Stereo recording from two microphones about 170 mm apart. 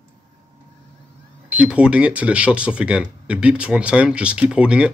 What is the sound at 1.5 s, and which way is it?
Speech, 5° right (ahead or behind).